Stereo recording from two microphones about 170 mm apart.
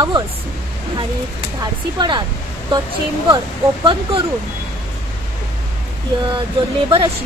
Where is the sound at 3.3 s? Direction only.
25° right (ahead or behind).